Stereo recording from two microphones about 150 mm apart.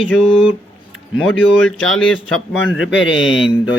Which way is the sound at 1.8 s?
5° left (ahead or behind).